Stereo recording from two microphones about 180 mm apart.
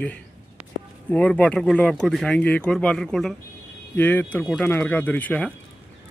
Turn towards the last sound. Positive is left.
turn(degrees=10)  # may be behind; listen again after turning